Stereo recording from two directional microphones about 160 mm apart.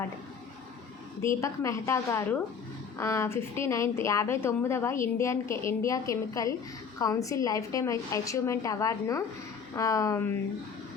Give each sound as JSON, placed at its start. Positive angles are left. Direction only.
{"t": 1.2, "sound": "a woman's voice", "side_deg": 20}